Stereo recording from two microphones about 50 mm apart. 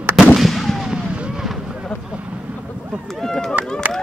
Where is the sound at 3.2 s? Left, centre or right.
Centre.